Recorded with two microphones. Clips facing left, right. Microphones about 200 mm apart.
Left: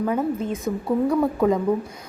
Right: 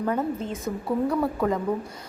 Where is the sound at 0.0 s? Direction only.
5° left (ahead or behind).